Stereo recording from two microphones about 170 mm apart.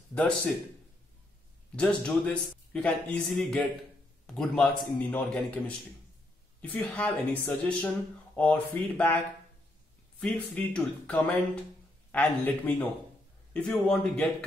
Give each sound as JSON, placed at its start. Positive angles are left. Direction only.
{"t": 1.8, "sound": "a man's voice", "side_deg": 5}
{"t": 6.6, "sound": "speech", "side_deg": 10}
{"t": 10.2, "sound": "speech", "side_deg": 5}